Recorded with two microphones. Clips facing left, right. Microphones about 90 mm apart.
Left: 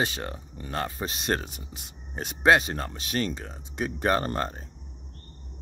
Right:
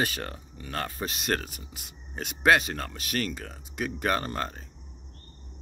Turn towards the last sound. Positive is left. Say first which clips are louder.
# left 3 dB
turn(degrees=30)  # may be behind; listen again after turning